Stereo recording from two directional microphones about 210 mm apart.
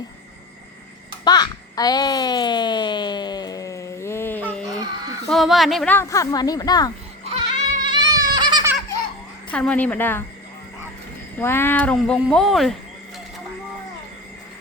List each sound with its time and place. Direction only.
1.2 s a sound: 20° left (ahead or behind)
5.3 s a woman's voice: centre (ahead or behind); by 6.9 s 20° left (ahead or behind)
7.3 s goat: 25° right (ahead or behind)
9.5 s a woman's voice: 5° left (ahead or behind)
11.3 s speech: 10° left (ahead or behind)